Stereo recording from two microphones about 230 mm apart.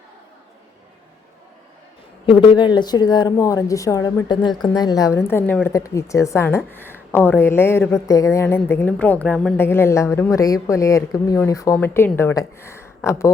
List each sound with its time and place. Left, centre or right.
2.2 s a woman's voice: left